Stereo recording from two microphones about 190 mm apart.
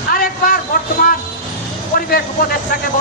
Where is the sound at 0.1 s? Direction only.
50° left (ahead or behind).